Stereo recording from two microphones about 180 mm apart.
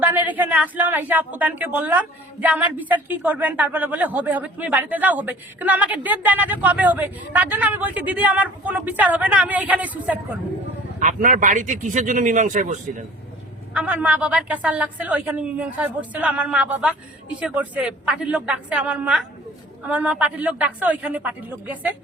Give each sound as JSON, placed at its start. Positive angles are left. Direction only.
{"t": 0.0, "sound": "speech", "side_deg": -10}
{"t": 11.0, "sound": "a man's voice", "side_deg": -45}
{"t": 13.7, "sound": "speech", "side_deg": -10}